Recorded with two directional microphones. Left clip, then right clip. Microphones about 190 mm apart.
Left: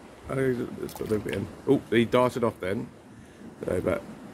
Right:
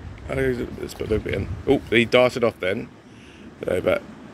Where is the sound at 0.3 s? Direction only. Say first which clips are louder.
Right 4 dB; 5° left (ahead or behind).